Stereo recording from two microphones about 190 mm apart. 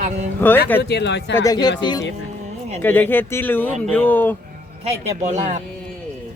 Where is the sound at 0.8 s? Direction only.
60° left (ahead or behind).